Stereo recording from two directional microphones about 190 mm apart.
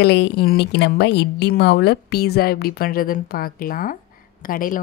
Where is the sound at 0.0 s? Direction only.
60° left (ahead or behind).